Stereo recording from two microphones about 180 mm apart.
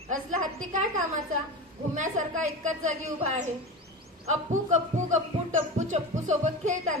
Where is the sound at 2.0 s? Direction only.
40° right (ahead or behind).